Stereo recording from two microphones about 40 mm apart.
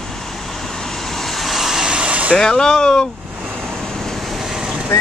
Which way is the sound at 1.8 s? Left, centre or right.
Right.